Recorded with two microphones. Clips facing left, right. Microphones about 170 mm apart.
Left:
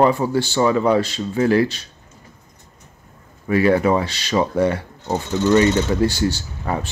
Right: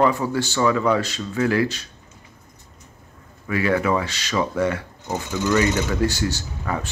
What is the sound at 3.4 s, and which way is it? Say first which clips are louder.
Speech: left 5 dB; 30° left (ahead or behind).